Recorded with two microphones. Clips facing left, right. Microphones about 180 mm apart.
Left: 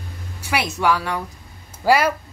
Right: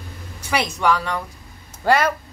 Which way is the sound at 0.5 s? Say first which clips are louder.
Even; 5° left (ahead or behind).